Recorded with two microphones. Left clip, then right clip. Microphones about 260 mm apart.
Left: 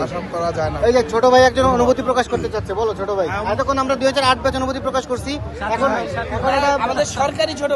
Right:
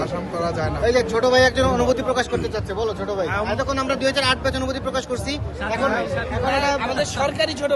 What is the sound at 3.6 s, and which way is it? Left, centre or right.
A man's voice, centre.